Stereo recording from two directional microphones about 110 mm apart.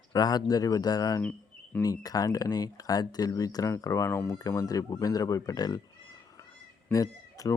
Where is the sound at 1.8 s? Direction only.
35° left (ahead or behind).